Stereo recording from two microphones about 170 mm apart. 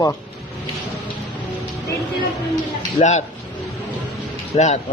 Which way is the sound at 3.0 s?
45° left (ahead or behind).